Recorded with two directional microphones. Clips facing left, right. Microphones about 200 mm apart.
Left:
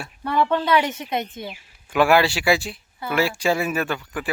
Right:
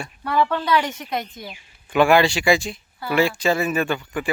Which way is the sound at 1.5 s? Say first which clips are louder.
Right 2 dB; 5° left (ahead or behind).